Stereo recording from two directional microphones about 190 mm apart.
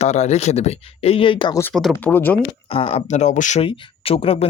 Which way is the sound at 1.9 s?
10° left (ahead or behind).